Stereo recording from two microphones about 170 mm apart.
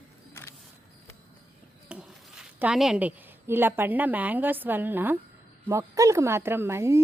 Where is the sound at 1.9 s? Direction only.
5° right (ahead or behind).